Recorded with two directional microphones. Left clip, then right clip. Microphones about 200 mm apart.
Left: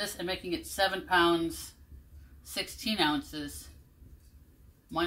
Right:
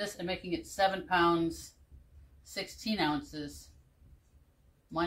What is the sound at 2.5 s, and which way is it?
Speech, 15° right (ahead or behind).